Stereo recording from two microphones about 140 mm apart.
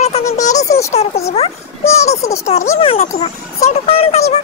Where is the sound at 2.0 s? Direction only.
20° left (ahead or behind).